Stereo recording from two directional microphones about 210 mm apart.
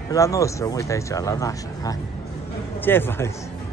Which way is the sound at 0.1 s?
15° left (ahead or behind).